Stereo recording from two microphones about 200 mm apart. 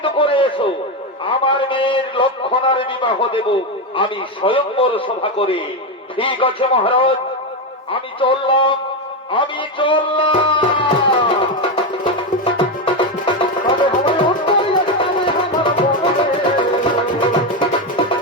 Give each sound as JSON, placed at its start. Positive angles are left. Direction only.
{"t": 0.0, "sound": "a sound", "side_deg": 25}
{"t": 1.3, "sound": "a man's voice", "side_deg": 25}
{"t": 9.3, "sound": "music", "side_deg": 25}